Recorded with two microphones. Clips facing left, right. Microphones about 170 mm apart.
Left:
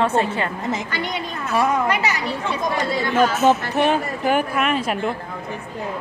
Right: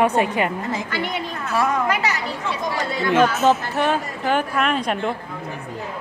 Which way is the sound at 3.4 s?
15° left (ahead or behind).